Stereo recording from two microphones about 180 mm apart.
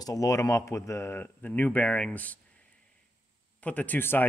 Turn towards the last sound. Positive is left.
turn(degrees=10)  # may be behind; listen again after turning